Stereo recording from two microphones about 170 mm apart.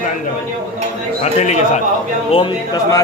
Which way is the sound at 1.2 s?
45° left (ahead or behind).